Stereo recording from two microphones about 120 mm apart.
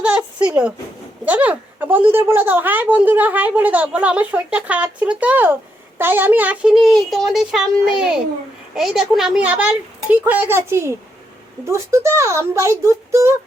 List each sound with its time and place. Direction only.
0.0 s a sound: 10° right (ahead or behind)
1.2 s a woman's voice: 15° right (ahead or behind)
6.8 s a child's voice: centre (ahead or behind); by 13.3 s 25° right (ahead or behind)